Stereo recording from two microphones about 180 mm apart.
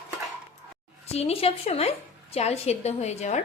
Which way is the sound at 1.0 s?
35° left (ahead or behind).